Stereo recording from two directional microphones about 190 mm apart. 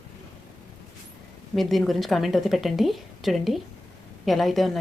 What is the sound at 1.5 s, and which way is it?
A woman's voice, centre (ahead or behind).